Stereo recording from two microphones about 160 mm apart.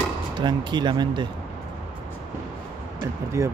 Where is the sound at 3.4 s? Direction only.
20° right (ahead or behind).